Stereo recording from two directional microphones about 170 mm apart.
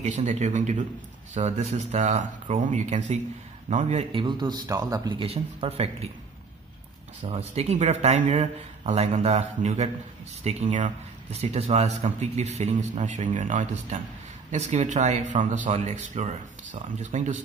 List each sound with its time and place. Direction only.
0.0 s speech: 45° right (ahead or behind)
4.1 s speech: 25° right (ahead or behind)
5.2 s speech: 35° right (ahead or behind)
7.2 s speech: 35° right (ahead or behind)